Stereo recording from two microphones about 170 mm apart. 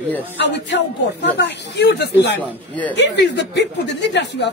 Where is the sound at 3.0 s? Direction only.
90° left.